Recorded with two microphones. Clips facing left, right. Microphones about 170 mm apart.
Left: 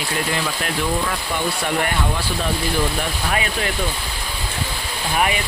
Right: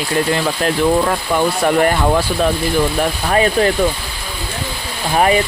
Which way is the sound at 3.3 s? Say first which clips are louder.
Right 11 dB; 40° right (ahead or behind).